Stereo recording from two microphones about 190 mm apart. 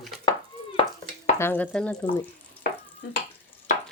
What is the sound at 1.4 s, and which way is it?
Stir, 10° left (ahead or behind).